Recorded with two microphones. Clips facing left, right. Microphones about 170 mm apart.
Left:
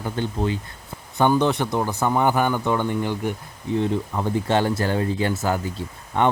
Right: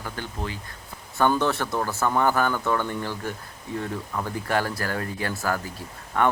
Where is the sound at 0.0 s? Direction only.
25° left (ahead or behind).